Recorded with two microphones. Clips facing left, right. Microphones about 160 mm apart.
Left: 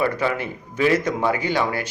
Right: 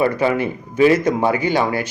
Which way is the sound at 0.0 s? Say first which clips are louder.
Right 5 dB; 20° right (ahead or behind).